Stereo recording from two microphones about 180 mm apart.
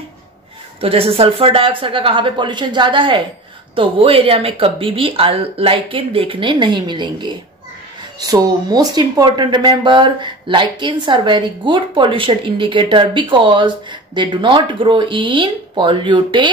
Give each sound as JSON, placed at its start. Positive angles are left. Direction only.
{"t": 0.7, "sound": "speech", "side_deg": -30}